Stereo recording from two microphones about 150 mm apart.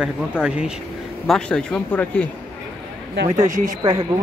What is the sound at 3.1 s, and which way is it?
Speech, 75° right (ahead or behind).